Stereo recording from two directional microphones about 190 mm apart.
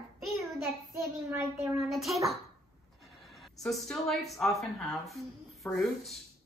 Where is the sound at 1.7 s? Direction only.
Centre (ahead or behind).